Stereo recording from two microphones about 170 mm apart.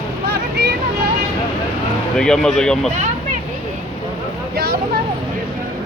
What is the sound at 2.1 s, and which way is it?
Speech, 5° left (ahead or behind).